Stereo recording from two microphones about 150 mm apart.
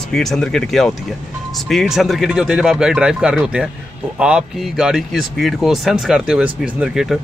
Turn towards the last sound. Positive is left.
turn(degrees=-5)  # may be behind; listen again after turning